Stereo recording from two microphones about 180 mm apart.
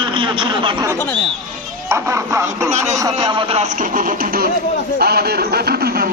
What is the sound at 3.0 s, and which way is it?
A man's voice, 25° right (ahead or behind).